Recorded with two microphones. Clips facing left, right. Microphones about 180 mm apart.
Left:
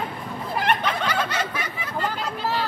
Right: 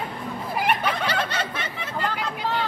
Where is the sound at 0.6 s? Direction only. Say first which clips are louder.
Even; 10° right (ahead or behind).